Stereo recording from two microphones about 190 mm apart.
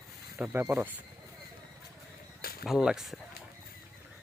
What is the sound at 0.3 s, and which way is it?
Speech, 10° right (ahead or behind).